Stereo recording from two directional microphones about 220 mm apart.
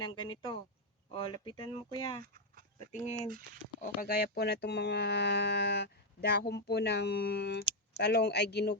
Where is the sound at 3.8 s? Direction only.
45° left (ahead or behind).